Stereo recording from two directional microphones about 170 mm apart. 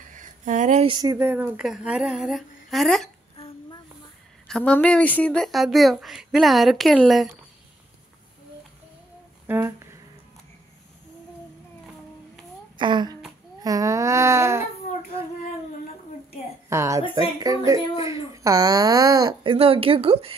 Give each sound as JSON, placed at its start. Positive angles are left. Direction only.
{"t": 0.1, "sound": "a sound", "side_deg": -50}
{"t": 0.8, "sound": "speech", "side_deg": -25}
{"t": 1.1, "sound": "speech", "side_deg": -10}
{"t": 3.3, "sound": "a sound", "side_deg": 35}
{"t": 4.5, "sound": "speech", "side_deg": 5}
{"t": 9.5, "sound": "speech", "side_deg": -15}
{"t": 12.7, "sound": "a sound", "side_deg": -25}
{"t": 13.6, "sound": "baby cry", "side_deg": -20}
{"t": 16.6, "sound": "a woman's voice", "side_deg": -15}